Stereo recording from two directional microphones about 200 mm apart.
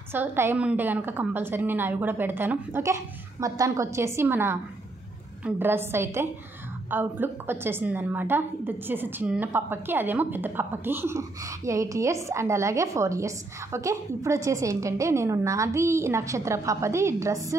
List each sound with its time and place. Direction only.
0.1 s a woman's voice: 10° right (ahead or behind)